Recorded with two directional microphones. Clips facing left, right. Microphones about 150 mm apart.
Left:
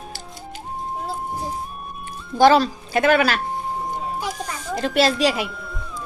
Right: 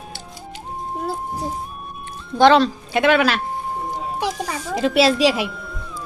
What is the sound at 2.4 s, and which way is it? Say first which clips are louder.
A woman's voice: right 1 dB; 5° left (ahead or behind).